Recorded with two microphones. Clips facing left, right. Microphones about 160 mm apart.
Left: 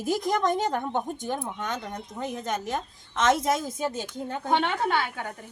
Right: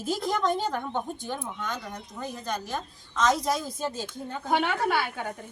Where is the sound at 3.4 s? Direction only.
50° left (ahead or behind).